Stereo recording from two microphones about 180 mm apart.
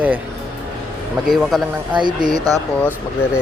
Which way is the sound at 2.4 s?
20° right (ahead or behind).